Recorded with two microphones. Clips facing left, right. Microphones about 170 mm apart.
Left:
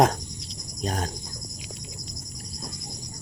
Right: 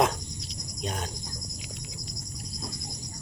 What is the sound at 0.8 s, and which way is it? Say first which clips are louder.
Wild animals: left 5 dB; 40° left (ahead or behind).